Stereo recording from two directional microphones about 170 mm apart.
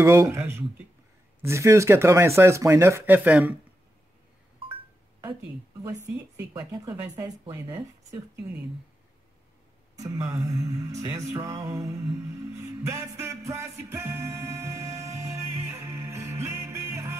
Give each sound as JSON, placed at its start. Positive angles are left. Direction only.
{"t": 0.0, "sound": "music", "side_deg": -15}
{"t": 6.3, "sound": "speech", "side_deg": -20}
{"t": 9.9, "sound": "speech", "side_deg": -20}
{"t": 10.3, "sound": "music", "side_deg": -20}